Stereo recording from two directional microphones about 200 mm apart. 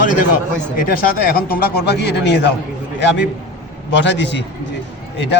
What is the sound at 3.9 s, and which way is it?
Speech, 60° left (ahead or behind).